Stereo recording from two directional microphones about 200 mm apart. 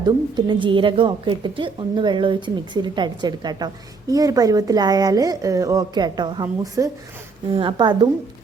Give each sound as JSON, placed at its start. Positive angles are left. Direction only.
{"t": 0.0, "sound": "a woman's voice", "side_deg": -20}